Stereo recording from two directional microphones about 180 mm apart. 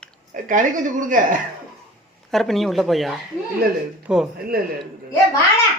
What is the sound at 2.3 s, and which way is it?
Speech, centre (ahead or behind).